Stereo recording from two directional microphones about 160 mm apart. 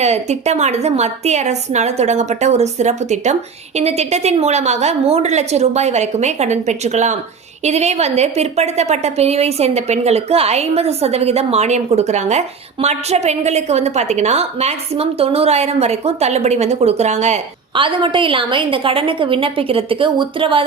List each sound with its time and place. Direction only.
0.0 s a woman's voice: 45° right (ahead or behind)
17.7 s a woman's voice: 30° right (ahead or behind)